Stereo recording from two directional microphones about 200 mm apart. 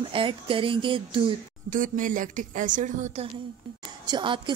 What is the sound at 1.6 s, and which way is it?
Speech, 40° right (ahead or behind).